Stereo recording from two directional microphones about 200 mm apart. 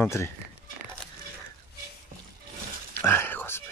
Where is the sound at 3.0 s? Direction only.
10° left (ahead or behind).